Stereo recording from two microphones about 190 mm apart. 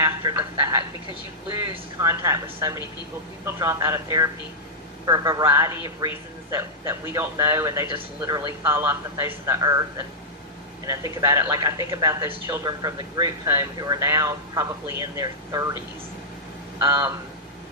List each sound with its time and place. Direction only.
0.0 s a sound: 15° right (ahead or behind)
1.5 s speech: 20° right (ahead or behind)
10.8 s speech: 15° right (ahead or behind)
16.8 s speech: 20° right (ahead or behind)